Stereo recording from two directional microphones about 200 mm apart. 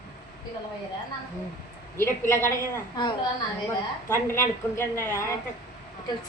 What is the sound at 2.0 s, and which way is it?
A woman's voice, 15° left (ahead or behind).